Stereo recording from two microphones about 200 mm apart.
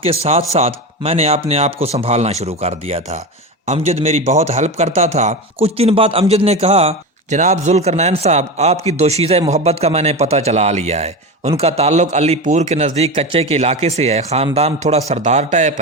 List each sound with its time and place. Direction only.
0.0 s a man's voice: 30° right (ahead or behind)